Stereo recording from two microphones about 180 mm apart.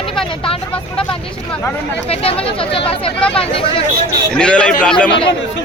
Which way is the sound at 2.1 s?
30° left (ahead or behind).